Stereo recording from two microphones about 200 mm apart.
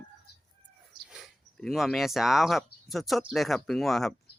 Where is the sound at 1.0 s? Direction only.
Centre (ahead or behind).